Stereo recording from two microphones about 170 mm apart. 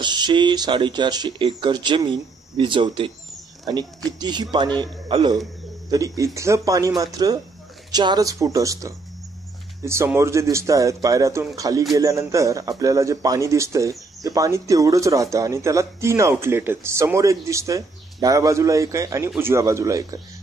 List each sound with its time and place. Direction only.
0.0 s a man's voice: 25° right (ahead or behind)